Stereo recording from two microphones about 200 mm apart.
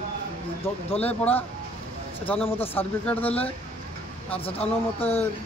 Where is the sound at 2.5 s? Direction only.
10° left (ahead or behind).